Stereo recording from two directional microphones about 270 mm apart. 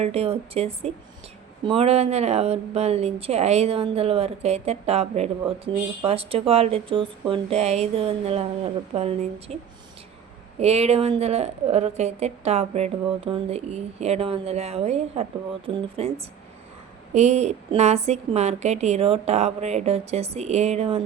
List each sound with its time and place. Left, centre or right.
0.0 s speech: right
10.6 s speech: right
17.2 s speech: right